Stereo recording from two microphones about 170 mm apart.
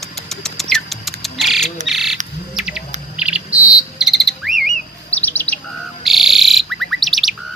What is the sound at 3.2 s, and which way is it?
Insect, 5° right (ahead or behind).